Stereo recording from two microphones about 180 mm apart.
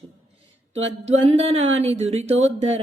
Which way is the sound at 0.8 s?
35° right (ahead or behind).